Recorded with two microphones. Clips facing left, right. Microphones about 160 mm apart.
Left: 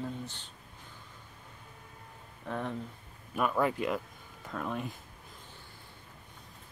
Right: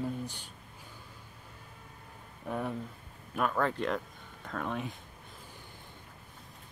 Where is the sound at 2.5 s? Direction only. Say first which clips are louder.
Right 1 dB; 10° right (ahead or behind).